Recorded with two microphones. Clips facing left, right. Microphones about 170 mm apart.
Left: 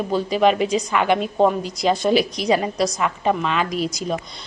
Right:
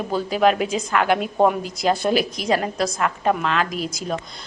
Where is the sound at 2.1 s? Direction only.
45° right (ahead or behind).